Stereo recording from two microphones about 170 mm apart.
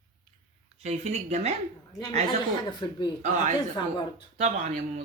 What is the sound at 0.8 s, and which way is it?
Speech, 40° right (ahead or behind).